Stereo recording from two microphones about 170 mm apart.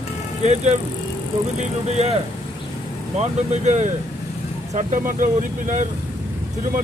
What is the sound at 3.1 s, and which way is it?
Speech, 40° right (ahead or behind).